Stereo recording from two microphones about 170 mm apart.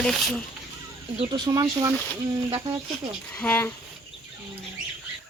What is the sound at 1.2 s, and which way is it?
Speech, 25° right (ahead or behind).